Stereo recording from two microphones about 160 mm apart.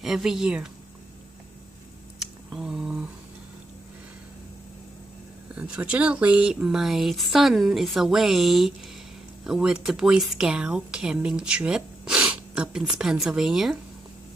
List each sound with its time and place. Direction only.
0.0 s speech: centre (ahead or behind)
2.1 s a sound: 5° right (ahead or behind)
5.6 s speech: 5° right (ahead or behind)